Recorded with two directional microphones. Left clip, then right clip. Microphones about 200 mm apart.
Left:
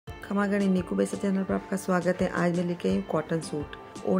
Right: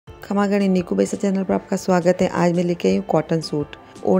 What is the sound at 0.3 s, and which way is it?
Speech, 30° right (ahead or behind).